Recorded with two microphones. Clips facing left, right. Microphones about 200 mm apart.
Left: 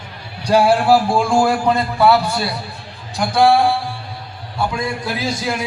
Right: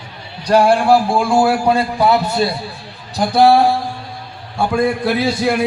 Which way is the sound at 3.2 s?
40° right (ahead or behind).